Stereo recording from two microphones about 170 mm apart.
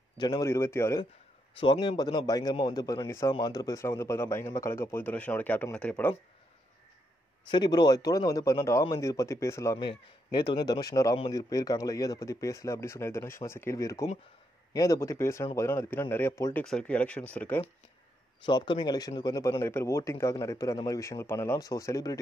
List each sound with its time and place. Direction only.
0.2 s speech: 20° left (ahead or behind)
1.6 s speech: 30° left (ahead or behind); by 6.1 s 10° left (ahead or behind)
7.4 s speech: 25° left (ahead or behind)
9.8 s speech: 25° left (ahead or behind)
16.6 s speech: 5° left (ahead or behind)
18.4 s speech: 25° left (ahead or behind)